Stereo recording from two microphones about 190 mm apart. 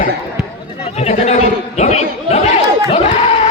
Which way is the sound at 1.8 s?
35° left (ahead or behind).